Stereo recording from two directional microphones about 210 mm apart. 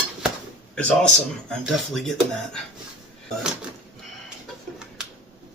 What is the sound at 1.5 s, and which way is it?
Speech, centre (ahead or behind).